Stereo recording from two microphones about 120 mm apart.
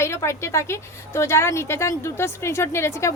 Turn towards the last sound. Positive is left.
turn(degrees=20)  # may be behind; listen again after turning